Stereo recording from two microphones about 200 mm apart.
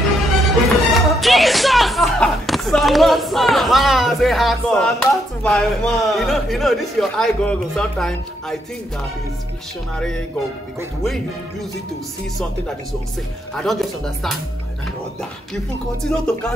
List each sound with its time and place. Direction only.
0.5 s speech: centre (ahead or behind)
9.9 s speech: 5° left (ahead or behind)
13.6 s speech: centre (ahead or behind)
16.0 s speech: 5° left (ahead or behind)